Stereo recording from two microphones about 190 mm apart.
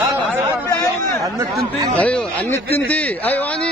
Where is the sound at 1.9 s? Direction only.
5° left (ahead or behind).